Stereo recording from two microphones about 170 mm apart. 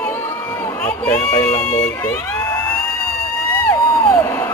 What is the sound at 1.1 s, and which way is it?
Speech, 45° left (ahead or behind).